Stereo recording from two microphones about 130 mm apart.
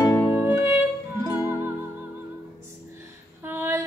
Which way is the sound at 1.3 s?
30° left (ahead or behind).